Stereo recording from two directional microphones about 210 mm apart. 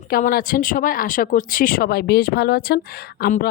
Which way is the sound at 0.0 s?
45° left (ahead or behind).